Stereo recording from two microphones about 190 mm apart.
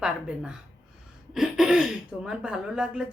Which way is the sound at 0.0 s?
5° right (ahead or behind).